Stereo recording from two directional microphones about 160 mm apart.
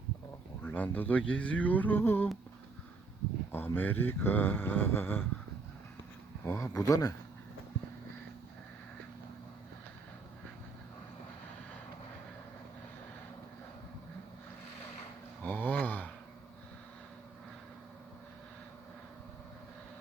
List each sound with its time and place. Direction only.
0.6 s speech: 10° left (ahead or behind)
3.5 s speech: 10° left (ahead or behind)
6.4 s speech: 20° left (ahead or behind)
15.4 s a sound: 10° left (ahead or behind)